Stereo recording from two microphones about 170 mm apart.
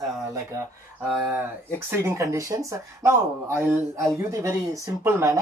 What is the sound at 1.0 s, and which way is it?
Speech, 10° right (ahead or behind).